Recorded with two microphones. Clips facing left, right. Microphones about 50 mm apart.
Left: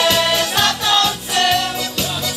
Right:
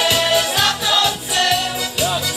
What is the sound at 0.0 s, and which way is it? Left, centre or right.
Music, centre.